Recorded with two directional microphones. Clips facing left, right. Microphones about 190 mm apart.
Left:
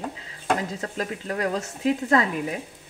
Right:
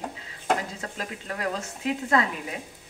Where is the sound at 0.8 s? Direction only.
40° left (ahead or behind).